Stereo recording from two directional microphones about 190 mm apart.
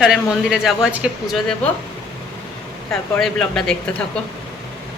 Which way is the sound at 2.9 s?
Centre (ahead or behind).